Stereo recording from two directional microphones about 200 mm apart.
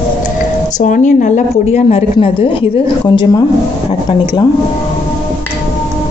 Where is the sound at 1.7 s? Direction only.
30° left (ahead or behind).